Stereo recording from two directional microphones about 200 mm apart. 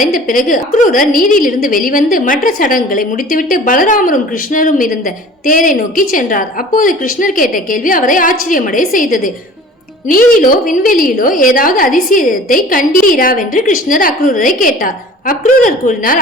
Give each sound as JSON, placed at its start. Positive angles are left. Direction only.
{"t": 0.0, "sound": "a woman's voice", "side_deg": 45}